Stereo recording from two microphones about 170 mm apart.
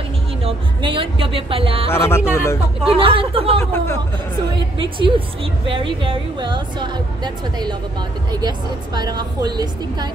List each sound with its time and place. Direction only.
0.4 s speech: 30° right (ahead or behind)
1.9 s speech: 15° left (ahead or behind)
2.8 s speech: 30° right (ahead or behind)
3.7 s speech: 15° left (ahead or behind)
4.7 s a woman's voice: 30° right (ahead or behind)